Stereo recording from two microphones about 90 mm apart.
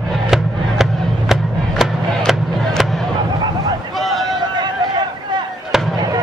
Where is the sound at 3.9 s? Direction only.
Centre (ahead or behind).